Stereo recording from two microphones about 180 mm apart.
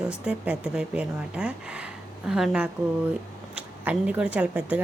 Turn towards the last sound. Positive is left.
turn(degrees=-10)  # may be behind; listen again after turning